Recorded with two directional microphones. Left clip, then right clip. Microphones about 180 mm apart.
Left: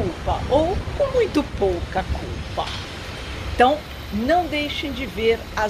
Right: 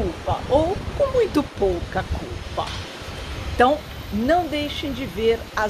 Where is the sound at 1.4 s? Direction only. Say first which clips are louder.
Even; 15° right (ahead or behind).